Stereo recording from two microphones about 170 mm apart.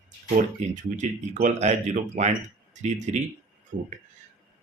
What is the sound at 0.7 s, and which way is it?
Speech, 45° right (ahead or behind).